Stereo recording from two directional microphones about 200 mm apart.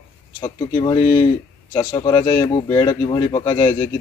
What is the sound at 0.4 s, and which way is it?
Speech, 20° left (ahead or behind).